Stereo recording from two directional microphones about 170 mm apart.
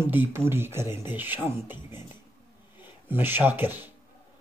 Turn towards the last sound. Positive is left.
turn(degrees=-10)  # may be behind; listen again after turning